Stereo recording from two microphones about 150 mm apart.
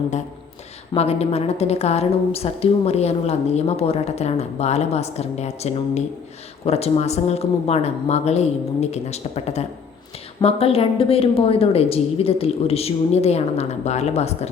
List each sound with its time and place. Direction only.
0.9 s a woman's voice: 45° left (ahead or behind)